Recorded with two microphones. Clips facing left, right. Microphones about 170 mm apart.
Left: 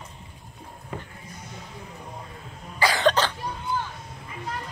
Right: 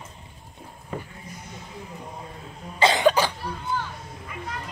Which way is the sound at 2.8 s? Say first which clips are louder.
Right 3 dB; 25° right (ahead or behind).